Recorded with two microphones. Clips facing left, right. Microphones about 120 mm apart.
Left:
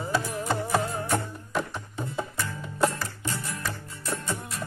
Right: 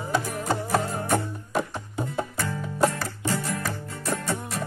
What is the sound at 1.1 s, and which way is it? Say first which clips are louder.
Music: right 5 dB; 15° right (ahead or behind).